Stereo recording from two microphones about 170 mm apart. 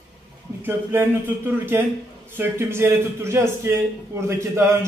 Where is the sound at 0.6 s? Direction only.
10° right (ahead or behind).